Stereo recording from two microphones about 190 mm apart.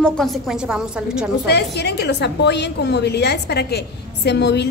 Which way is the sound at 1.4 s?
60° left (ahead or behind).